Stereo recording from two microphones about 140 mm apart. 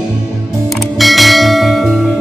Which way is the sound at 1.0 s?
Centre (ahead or behind).